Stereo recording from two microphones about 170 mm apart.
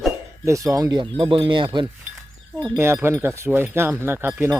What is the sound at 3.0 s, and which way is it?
Speech, 15° right (ahead or behind).